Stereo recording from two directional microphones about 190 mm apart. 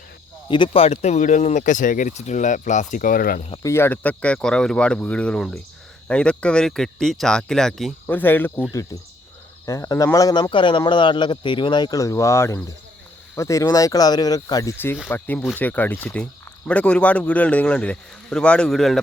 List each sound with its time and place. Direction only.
0.4 s speech: 25° left (ahead or behind); by 3.4 s 50° left (ahead or behind)
3.6 s speech: 15° left (ahead or behind)